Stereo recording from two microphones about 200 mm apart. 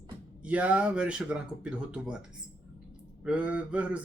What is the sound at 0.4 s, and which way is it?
Speech, 5° right (ahead or behind).